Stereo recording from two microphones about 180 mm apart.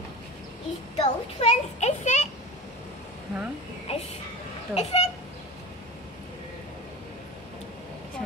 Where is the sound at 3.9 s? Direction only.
35° left (ahead or behind).